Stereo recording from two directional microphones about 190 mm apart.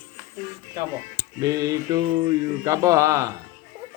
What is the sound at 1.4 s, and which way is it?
A man's voice, 20° right (ahead or behind).